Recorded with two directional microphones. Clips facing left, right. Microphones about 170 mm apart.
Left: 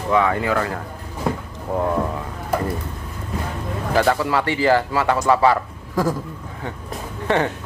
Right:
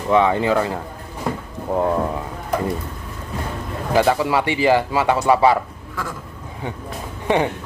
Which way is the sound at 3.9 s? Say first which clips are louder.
Right 2 dB; 15° right (ahead or behind).